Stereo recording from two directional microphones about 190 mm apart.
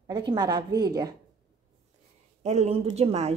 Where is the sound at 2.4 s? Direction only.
35° right (ahead or behind).